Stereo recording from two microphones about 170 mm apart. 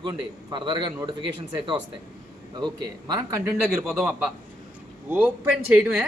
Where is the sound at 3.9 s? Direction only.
10° right (ahead or behind).